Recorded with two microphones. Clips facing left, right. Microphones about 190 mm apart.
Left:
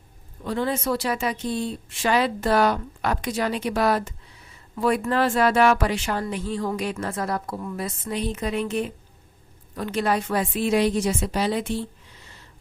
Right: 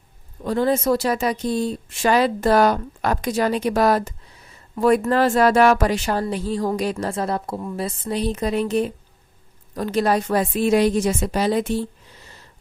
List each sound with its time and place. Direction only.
0.4 s speech: 40° right (ahead or behind)